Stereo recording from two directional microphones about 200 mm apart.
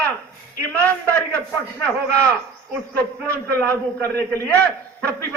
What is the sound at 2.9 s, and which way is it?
A man's voice, 10° left (ahead or behind).